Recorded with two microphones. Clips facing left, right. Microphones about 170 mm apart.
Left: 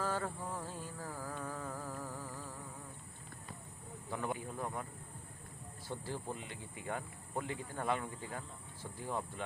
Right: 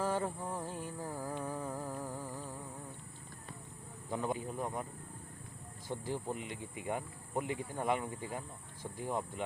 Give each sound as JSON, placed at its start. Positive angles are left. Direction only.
{"t": 0.0, "sound": "music", "side_deg": -20}
{"t": 4.1, "sound": "speech", "side_deg": -20}
{"t": 5.9, "sound": "speech", "side_deg": -15}